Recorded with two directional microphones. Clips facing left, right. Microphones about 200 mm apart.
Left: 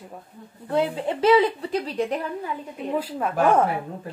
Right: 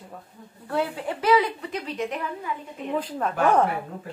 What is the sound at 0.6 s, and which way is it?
A woman's voice, 25° left (ahead or behind).